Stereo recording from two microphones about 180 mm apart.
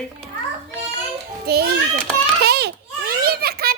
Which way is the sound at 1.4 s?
65° right (ahead or behind).